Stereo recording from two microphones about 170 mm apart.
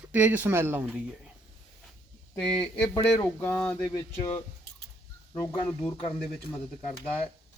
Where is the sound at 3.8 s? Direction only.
30° left (ahead or behind).